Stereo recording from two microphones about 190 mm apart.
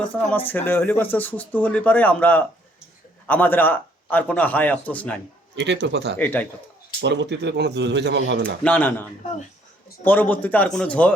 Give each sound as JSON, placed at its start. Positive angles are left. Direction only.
{"t": 0.3, "sound": "speech", "side_deg": 10}
{"t": 5.5, "sound": "speech", "side_deg": -65}
{"t": 6.1, "sound": "speech", "side_deg": 10}
{"t": 7.0, "sound": "speech", "side_deg": -65}
{"t": 8.6, "sound": "speech", "side_deg": 10}